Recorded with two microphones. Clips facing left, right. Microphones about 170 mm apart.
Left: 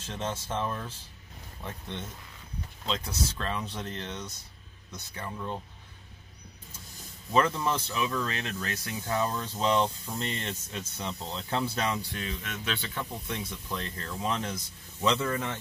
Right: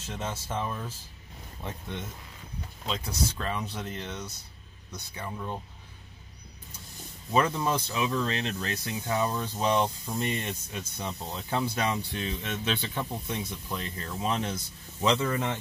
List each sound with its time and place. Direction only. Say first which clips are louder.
0.2 s speech: left 1 dB; 10° right (ahead or behind)
2.9 s speech: right 1 dB; 10° right (ahead or behind)
7.3 s speech: even; 15° right (ahead or behind)